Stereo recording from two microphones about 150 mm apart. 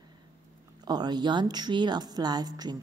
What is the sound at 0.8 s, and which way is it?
A woman's voice, 30° right (ahead or behind).